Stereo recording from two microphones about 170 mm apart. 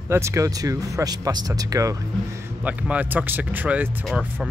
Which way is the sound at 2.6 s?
10° right (ahead or behind).